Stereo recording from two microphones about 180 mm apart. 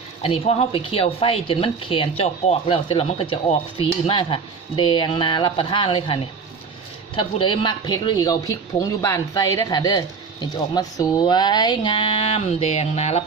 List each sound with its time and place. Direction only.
0.2 s speech: 30° left (ahead or behind)
7.2 s speech: 30° left (ahead or behind)